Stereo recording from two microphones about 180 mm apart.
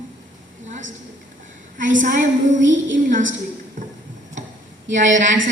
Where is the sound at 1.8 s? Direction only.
45° right (ahead or behind).